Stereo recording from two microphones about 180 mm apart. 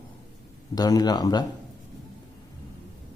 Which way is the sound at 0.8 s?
20° left (ahead or behind).